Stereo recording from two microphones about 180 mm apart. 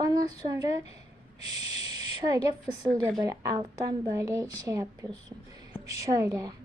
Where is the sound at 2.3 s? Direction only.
20° right (ahead or behind).